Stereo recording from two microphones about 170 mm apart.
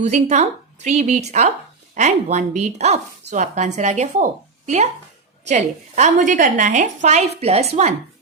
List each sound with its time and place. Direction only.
0.0 s speech: 40° right (ahead or behind)